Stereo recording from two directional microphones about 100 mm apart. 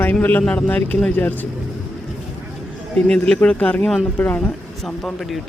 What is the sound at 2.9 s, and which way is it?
Speech, 10° left (ahead or behind).